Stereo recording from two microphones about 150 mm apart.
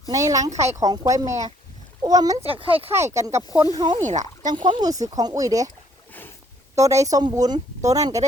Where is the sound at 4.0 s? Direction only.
55° right (ahead or behind).